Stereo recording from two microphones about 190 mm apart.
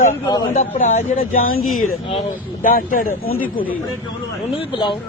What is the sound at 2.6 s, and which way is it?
Speech, 50° left (ahead or behind).